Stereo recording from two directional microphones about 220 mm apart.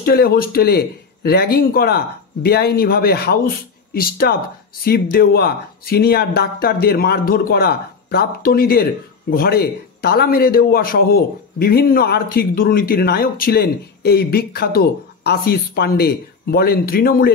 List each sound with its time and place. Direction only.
0.0 s a man's voice: 45° left (ahead or behind)